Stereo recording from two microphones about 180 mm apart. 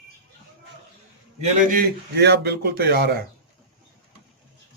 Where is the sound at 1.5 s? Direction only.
60° right (ahead or behind).